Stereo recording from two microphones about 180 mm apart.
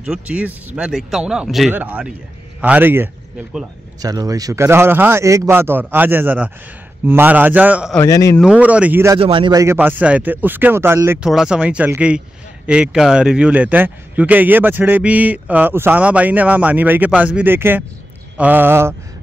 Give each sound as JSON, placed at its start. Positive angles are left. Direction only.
{"t": 0.0, "sound": "speech", "side_deg": -5}
{"t": 8.0, "sound": "speech", "side_deg": 15}
{"t": 8.4, "sound": "speech", "side_deg": -5}
{"t": 9.2, "sound": "a man's voice", "side_deg": -30}
{"t": 9.8, "sound": "speech", "side_deg": -10}